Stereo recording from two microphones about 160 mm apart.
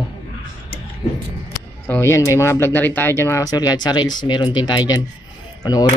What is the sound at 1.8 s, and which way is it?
Speech, 15° left (ahead or behind).